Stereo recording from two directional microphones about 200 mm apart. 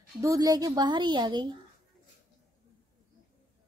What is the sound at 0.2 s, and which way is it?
A woman's voice, 15° right (ahead or behind).